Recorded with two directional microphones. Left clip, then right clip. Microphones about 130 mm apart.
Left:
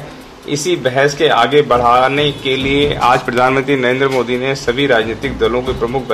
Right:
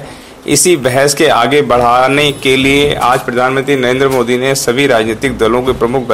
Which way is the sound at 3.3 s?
5° left (ahead or behind).